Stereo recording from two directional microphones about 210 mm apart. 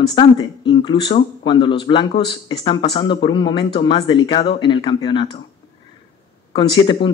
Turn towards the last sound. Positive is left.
turn(degrees=20)  # may be behind; listen again after turning